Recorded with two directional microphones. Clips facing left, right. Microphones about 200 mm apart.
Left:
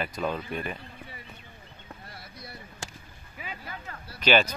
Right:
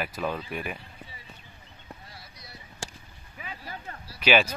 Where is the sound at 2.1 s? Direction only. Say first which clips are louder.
Left 4 dB; 55° left (ahead or behind).